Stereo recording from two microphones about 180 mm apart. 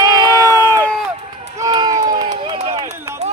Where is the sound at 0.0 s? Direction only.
20° right (ahead or behind).